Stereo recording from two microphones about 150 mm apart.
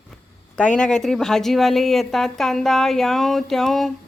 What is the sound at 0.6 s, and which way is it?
A woman's voice, 5° left (ahead or behind).